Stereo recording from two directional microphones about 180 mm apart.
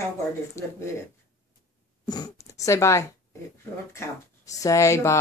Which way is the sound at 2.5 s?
15° left (ahead or behind).